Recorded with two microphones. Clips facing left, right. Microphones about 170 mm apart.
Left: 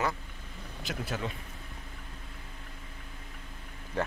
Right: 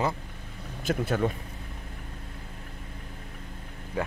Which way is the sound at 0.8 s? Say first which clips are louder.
Right 9 dB; 50° right (ahead or behind).